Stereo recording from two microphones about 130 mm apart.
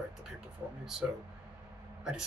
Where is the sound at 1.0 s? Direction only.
10° right (ahead or behind).